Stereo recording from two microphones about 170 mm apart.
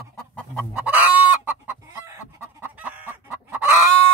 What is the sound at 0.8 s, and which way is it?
Chicken, 10° right (ahead or behind).